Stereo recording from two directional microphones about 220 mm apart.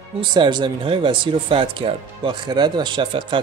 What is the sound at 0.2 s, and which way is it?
A man's voice, 20° right (ahead or behind).